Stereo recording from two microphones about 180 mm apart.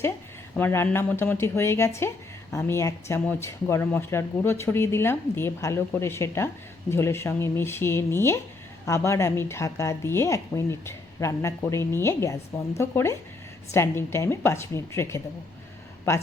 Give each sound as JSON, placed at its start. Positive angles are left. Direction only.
{"t": 0.5, "sound": "speech", "side_deg": 10}